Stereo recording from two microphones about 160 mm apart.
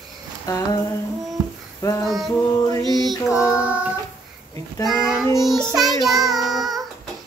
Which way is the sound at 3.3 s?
20° left (ahead or behind).